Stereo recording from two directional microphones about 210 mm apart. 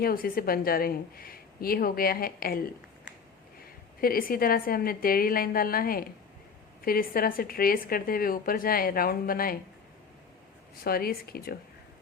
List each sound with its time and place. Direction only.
0.0 s a woman's voice: 45° left (ahead or behind)
4.0 s a woman's voice: 45° left (ahead or behind)
10.8 s a woman's voice: 45° left (ahead or behind)